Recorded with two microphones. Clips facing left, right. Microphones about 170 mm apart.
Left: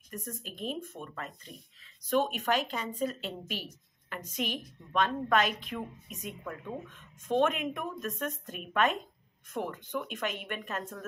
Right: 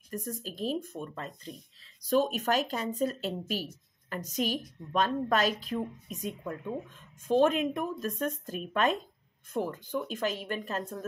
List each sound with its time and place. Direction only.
0.1 s a woman's voice: 35° right (ahead or behind)